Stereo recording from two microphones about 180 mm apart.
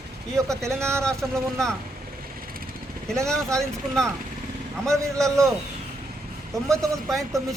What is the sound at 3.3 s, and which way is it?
Speech, 5° left (ahead or behind).